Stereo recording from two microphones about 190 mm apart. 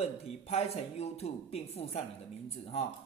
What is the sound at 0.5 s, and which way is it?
A man's voice, 35° left (ahead or behind).